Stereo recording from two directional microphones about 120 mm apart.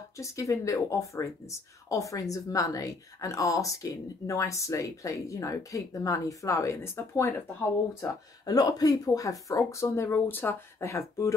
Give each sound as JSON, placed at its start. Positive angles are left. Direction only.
{"t": 0.2, "sound": "speech", "side_deg": 25}
{"t": 8.0, "sound": "speech", "side_deg": 30}